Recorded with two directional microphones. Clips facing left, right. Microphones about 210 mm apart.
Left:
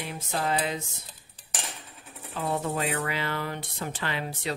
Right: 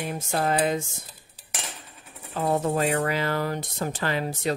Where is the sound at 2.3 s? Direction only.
45° right (ahead or behind).